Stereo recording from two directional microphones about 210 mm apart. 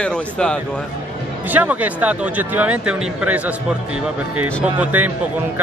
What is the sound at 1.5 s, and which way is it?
Speech, 10° right (ahead or behind).